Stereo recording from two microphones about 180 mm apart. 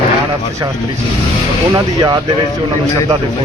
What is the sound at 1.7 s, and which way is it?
Speech, 25° right (ahead or behind).